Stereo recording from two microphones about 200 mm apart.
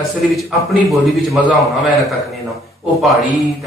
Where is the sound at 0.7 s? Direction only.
Centre (ahead or behind).